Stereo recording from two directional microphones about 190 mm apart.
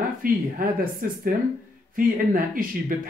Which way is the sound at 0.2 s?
50° right (ahead or behind).